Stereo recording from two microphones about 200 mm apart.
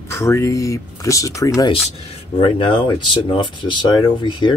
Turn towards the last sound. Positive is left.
turn(degrees=20)  # may be behind; listen again after turning